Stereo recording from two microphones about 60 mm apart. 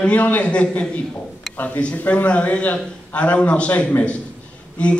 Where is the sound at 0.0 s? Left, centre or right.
Left.